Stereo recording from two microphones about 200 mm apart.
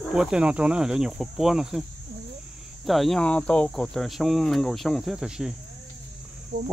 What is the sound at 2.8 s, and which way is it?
Speech, centre (ahead or behind).